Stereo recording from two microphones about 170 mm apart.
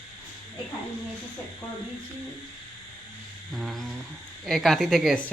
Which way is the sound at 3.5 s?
Centre (ahead or behind).